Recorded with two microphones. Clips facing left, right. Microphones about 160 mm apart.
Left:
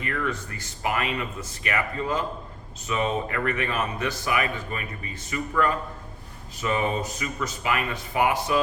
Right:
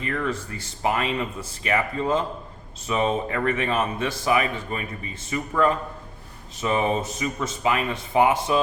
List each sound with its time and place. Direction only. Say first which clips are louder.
0.0 s speech: right 2 dB; 30° right (ahead or behind)